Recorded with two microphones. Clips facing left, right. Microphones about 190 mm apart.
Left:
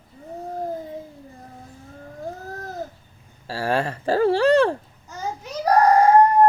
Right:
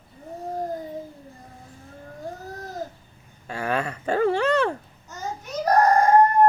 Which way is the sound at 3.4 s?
35° left (ahead or behind).